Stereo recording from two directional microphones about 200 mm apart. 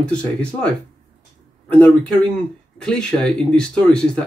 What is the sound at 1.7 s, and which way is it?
Speech, 5° left (ahead or behind).